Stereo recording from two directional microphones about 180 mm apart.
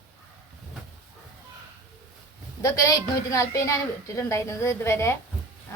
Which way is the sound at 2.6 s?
20° left (ahead or behind).